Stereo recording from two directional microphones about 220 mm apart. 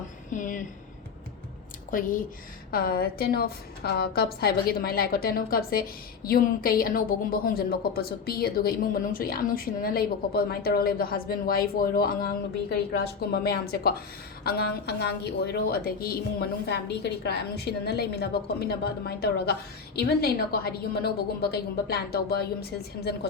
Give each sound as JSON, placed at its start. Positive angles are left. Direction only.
{"t": 0.3, "sound": "speech", "side_deg": 35}
{"t": 1.9, "sound": "a woman's voice", "side_deg": 40}